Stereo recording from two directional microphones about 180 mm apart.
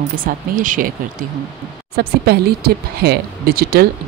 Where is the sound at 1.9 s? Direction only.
60° right (ahead or behind).